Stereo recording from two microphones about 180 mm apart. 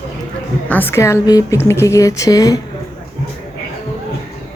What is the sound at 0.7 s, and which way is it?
A woman's voice, 10° left (ahead or behind).